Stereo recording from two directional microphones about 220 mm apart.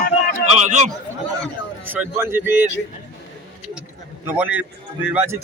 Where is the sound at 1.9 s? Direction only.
10° right (ahead or behind).